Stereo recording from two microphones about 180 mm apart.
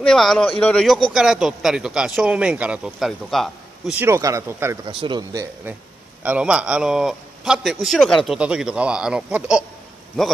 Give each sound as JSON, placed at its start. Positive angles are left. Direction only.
{"t": 0.0, "sound": "a man's voice", "side_deg": 5}
{"t": 4.0, "sound": "speech", "side_deg": -15}
{"t": 4.8, "sound": "speech", "side_deg": -25}
{"t": 6.2, "sound": "a man's voice", "side_deg": -5}